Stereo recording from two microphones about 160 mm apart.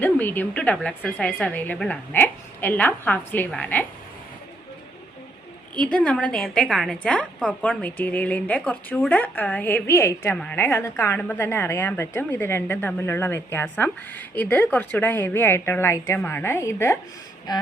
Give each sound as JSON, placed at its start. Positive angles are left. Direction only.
{"t": 0.0, "sound": "a woman's voice", "side_deg": 10}
{"t": 5.8, "sound": "a woman's voice", "side_deg": 10}